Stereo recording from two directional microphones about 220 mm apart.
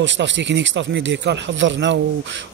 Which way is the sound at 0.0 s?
55° right (ahead or behind).